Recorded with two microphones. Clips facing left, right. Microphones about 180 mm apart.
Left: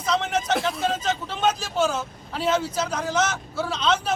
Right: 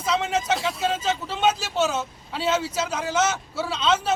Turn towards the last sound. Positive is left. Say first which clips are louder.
# right 1 dB
turn(degrees=-5)  # may be behind; listen again after turning